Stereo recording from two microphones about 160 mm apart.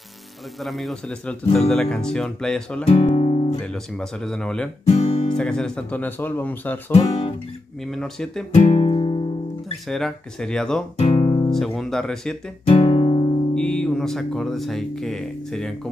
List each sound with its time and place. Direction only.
0.6 s speech: centre (ahead or behind)
3.2 s guitar: 40° left (ahead or behind)
3.6 s speech: 5° left (ahead or behind)
4.8 s guitar: 40° left (ahead or behind)
5.3 s speech: 5° left (ahead or behind)
6.9 s speech: 35° left (ahead or behind)
7.8 s speech: 5° left (ahead or behind)
8.5 s guitar: 40° left (ahead or behind)
9.8 s speech: centre (ahead or behind)
11.0 s guitar: 35° left (ahead or behind)
11.5 s speech: centre (ahead or behind)
12.6 s music: 35° left (ahead or behind)
13.6 s speech: 5° left (ahead or behind)